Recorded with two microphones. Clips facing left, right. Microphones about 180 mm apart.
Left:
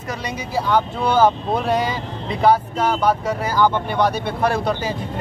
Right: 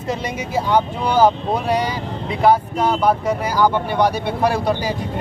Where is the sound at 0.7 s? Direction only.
15° right (ahead or behind).